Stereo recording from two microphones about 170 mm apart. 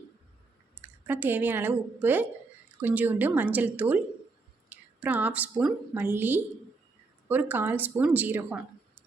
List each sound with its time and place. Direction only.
0.8 s a woman's voice: 10° right (ahead or behind)